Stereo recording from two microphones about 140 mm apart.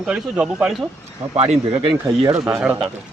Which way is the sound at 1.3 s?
45° right (ahead or behind).